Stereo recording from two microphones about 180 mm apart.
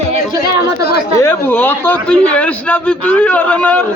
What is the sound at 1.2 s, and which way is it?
A man's voice, 10° left (ahead or behind).